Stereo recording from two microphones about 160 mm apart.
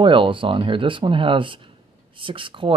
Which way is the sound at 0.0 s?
30° right (ahead or behind).